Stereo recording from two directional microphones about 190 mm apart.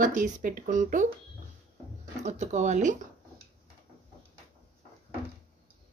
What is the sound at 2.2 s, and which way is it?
Speech, 40° right (ahead or behind).